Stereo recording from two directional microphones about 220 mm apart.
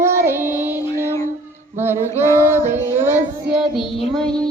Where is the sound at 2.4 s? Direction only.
10° right (ahead or behind).